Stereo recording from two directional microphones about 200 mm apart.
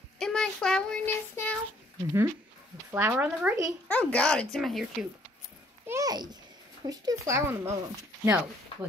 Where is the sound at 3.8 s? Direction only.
5° left (ahead or behind).